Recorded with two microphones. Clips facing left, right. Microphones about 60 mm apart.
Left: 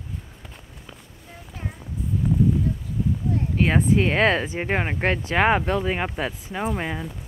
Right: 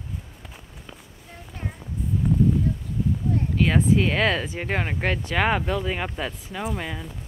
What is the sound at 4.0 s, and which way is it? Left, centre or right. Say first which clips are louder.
Speech: left 2 dB; left.